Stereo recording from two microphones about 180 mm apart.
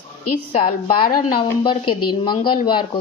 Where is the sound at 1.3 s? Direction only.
30° left (ahead or behind).